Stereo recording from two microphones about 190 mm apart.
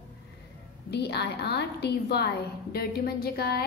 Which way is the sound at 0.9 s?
60° left (ahead or behind).